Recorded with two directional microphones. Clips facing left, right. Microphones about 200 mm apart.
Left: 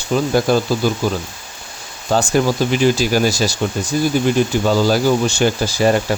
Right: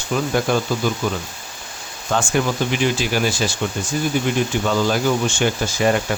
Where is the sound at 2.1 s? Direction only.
35° left (ahead or behind).